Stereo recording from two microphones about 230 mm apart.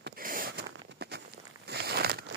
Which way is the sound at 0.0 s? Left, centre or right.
Right.